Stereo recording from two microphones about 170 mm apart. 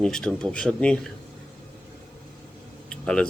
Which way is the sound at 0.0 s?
5° left (ahead or behind).